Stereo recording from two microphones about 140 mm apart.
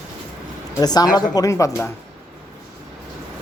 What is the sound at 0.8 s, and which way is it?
Speech, 30° left (ahead or behind).